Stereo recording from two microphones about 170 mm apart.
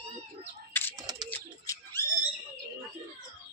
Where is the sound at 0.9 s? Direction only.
25° right (ahead or behind).